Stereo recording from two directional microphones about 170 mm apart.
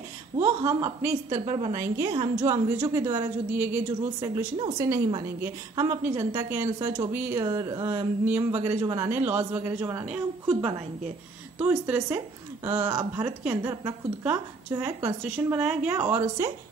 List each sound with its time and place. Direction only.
0.7 s a woman's voice: 15° right (ahead or behind)